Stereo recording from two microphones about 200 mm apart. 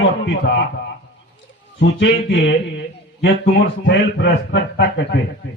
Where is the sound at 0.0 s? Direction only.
60° left (ahead or behind).